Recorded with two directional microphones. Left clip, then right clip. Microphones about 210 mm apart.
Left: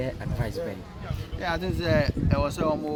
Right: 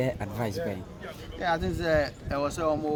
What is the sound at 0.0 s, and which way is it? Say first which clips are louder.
Speech: right 2 dB; 45° right (ahead or behind).